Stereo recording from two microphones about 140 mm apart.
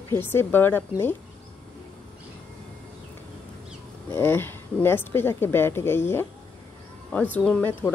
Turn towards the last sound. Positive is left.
turn(degrees=10)  # may be behind; listen again after turning